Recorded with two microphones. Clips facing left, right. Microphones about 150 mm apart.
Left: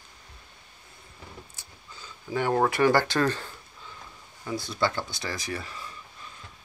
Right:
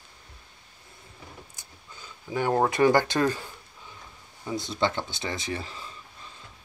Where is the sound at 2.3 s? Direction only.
20° right (ahead or behind).